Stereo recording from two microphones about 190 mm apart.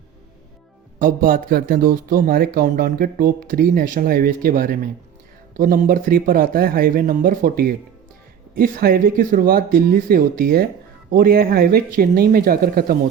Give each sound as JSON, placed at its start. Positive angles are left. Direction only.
{"t": 0.9, "sound": "speech", "side_deg": -45}